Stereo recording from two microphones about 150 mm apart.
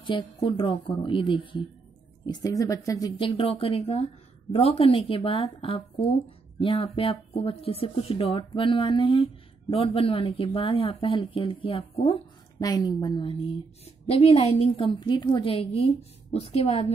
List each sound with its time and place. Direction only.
0.0 s a woman's voice: 35° left (ahead or behind)
2.2 s speech: 25° left (ahead or behind)
3.2 s a woman's voice: 35° left (ahead or behind)
12.5 s a woman's voice: 25° left (ahead or behind); by 16.8 s 40° left (ahead or behind)